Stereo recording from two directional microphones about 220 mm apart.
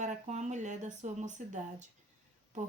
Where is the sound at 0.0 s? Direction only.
30° right (ahead or behind).